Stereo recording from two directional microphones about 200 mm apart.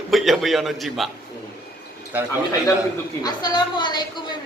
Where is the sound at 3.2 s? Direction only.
20° left (ahead or behind).